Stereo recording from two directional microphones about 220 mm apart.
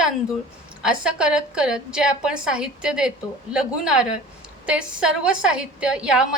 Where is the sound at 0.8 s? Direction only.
5° right (ahead or behind).